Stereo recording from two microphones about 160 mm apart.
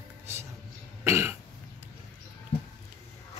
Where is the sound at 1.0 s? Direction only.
15° right (ahead or behind).